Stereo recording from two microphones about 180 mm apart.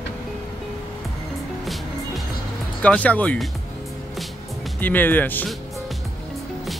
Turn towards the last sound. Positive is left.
turn(degrees=10)  # may be behind; listen again after turning